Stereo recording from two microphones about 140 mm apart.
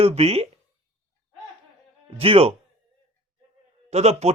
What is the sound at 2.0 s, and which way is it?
Speech, 45° right (ahead or behind).